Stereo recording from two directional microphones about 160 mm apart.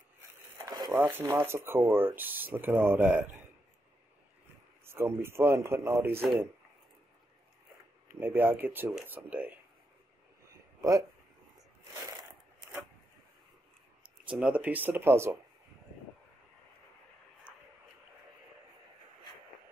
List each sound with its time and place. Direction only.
0.6 s a sound: 25° right (ahead or behind)
0.9 s speech: 15° right (ahead or behind)
4.8 s speech: 15° right (ahead or behind)
8.2 s speech: 15° right (ahead or behind)
10.8 s speech: 20° right (ahead or behind)
14.3 s speech: 10° right (ahead or behind)